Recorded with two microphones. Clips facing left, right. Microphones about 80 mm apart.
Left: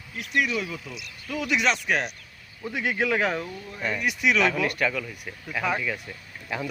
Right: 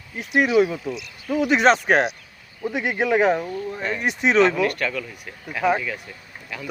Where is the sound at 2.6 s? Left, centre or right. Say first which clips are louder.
Right 4 dB; centre.